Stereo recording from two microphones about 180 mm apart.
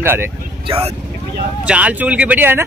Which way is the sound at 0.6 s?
35° right (ahead or behind).